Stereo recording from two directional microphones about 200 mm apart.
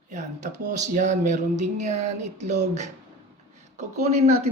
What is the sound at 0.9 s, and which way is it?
Speech, 35° right (ahead or behind).